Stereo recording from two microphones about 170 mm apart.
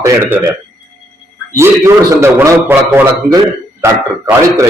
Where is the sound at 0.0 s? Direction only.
10° right (ahead or behind).